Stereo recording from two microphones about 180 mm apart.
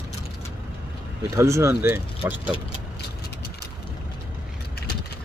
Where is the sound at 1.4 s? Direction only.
15° right (ahead or behind).